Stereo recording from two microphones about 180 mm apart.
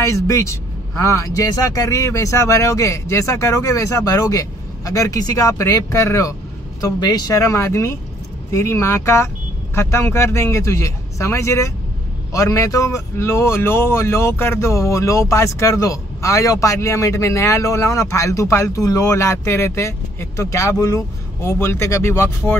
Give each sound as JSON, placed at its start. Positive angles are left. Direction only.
{"t": 0.0, "sound": "a man's voice", "side_deg": 15}